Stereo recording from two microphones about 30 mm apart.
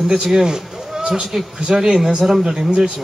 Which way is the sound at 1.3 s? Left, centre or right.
Centre.